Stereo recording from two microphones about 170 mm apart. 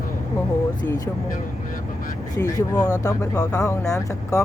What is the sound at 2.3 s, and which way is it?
Speech, 20° left (ahead or behind).